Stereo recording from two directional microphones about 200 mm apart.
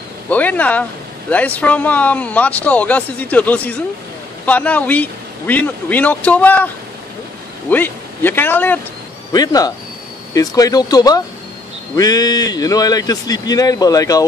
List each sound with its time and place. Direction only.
0.3 s speech: 10° left (ahead or behind)
7.7 s speech: 10° left (ahead or behind)